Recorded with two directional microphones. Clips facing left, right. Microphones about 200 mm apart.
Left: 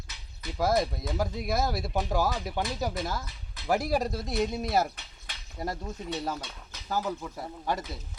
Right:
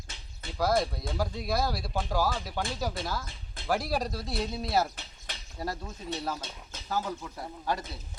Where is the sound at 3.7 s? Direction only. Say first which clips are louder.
Left 3 dB; 20° left (ahead or behind).